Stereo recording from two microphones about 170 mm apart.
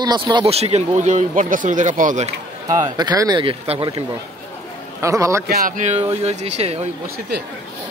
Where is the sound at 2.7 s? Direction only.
25° right (ahead or behind).